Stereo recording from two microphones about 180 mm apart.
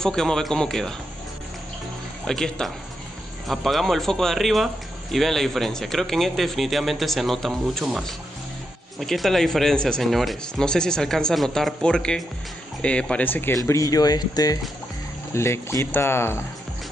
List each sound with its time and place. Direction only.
0.0 s speech: 5° left (ahead or behind)
2.2 s speech: 5° left (ahead or behind)
9.0 s speech: centre (ahead or behind)